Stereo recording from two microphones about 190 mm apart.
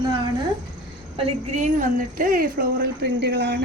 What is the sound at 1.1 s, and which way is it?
A woman's voice, 35° right (ahead or behind).